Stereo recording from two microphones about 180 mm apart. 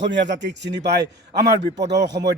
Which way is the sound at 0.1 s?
80° right.